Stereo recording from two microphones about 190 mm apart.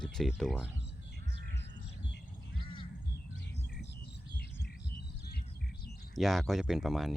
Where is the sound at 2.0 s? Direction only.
65° left (ahead or behind).